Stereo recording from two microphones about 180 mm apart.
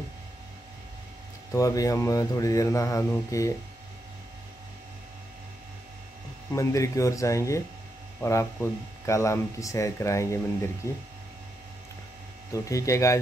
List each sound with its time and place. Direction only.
1.5 s speech: 20° left (ahead or behind)
6.5 s speech: 15° left (ahead or behind)
12.5 s speech: 15° left (ahead or behind)